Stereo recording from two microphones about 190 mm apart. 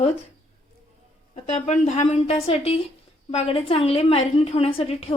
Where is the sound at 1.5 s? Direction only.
40° left (ahead or behind).